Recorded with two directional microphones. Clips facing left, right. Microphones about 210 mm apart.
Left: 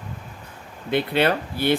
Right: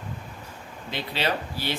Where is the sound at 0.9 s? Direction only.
55° left (ahead or behind).